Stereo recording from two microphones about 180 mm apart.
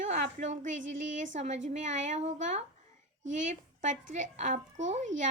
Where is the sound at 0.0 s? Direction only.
45° right (ahead or behind).